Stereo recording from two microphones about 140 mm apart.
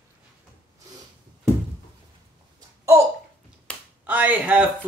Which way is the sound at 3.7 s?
10° left (ahead or behind).